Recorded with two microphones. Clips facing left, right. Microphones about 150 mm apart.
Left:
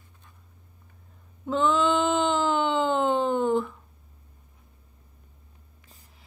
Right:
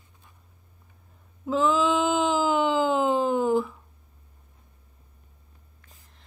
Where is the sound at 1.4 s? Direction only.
Centre (ahead or behind).